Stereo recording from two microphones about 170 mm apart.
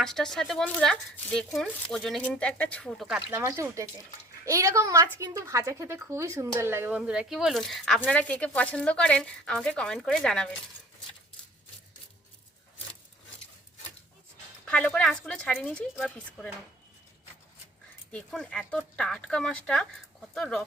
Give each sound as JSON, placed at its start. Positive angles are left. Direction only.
{"t": 0.0, "sound": "speech", "side_deg": 5}
{"t": 3.2, "sound": "speech", "side_deg": -15}
{"t": 14.6, "sound": "speech", "side_deg": 5}
{"t": 18.1, "sound": "speech", "side_deg": 5}